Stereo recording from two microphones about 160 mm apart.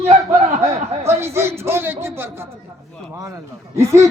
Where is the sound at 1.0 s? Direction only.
15° right (ahead or behind).